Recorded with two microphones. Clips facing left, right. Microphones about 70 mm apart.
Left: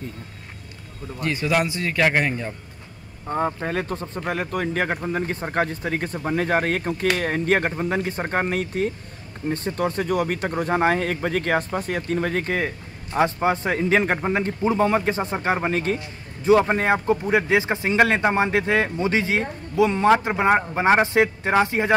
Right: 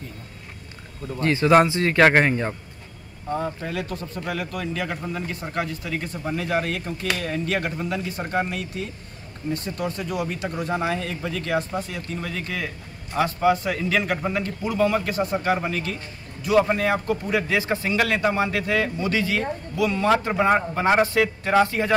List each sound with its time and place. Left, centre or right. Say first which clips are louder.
1.2 s a man's voice: right 6 dB; right
3.3 s speech: left 5 dB; left
12.5 s a man's voice: left 5 dB; left